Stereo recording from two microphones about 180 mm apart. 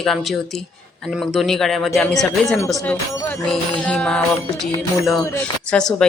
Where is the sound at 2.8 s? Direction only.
15° left (ahead or behind).